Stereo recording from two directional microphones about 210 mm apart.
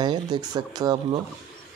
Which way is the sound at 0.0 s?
20° right (ahead or behind).